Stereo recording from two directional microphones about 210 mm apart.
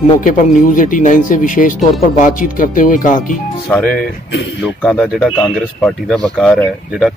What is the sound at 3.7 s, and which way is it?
Speech, 5° left (ahead or behind).